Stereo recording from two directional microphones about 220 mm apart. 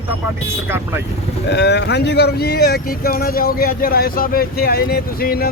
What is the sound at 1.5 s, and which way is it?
Speech, 50° left (ahead or behind).